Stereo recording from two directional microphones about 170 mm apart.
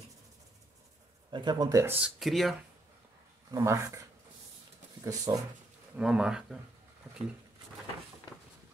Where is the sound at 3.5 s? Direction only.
15° right (ahead or behind).